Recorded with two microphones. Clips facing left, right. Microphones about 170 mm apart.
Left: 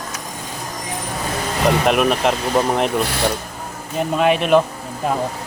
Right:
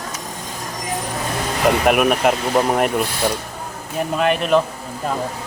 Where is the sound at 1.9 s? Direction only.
5° right (ahead or behind).